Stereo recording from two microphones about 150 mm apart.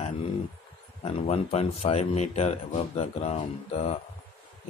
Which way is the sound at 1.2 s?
45° left (ahead or behind).